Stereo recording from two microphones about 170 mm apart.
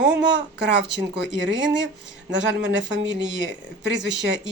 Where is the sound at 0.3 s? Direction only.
90° right.